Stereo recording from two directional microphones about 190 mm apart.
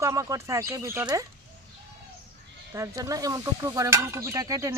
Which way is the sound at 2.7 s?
15° right (ahead or behind).